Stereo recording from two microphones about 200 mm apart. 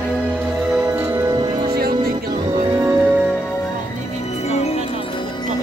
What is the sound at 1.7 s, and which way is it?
Music, 50° right (ahead or behind).